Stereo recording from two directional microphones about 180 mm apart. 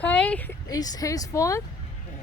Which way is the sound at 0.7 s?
20° left (ahead or behind).